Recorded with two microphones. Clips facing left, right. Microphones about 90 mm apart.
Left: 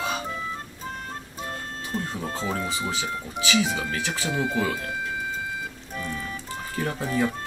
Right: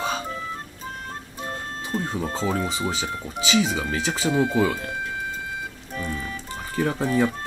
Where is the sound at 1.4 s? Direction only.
30° right (ahead or behind).